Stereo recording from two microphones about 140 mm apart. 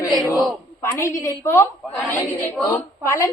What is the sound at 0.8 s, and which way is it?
A woman's voice, 20° left (ahead or behind).